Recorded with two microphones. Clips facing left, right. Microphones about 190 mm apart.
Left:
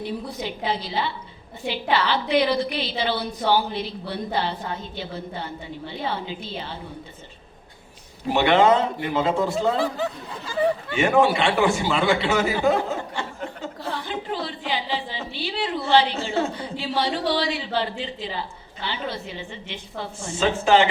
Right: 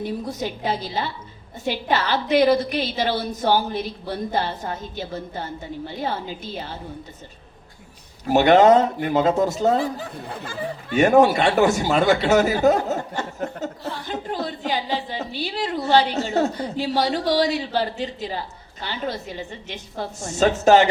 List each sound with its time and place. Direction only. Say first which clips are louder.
0.3 s a woman's voice: right 2 dB; 45° right (ahead or behind)
8.3 s a woman's voice: right 4 dB; 45° right (ahead or behind)
10.2 s a woman's voice: even; 55° right (ahead or behind)
10.9 s a woman's voice: right 6 dB; 45° right (ahead or behind)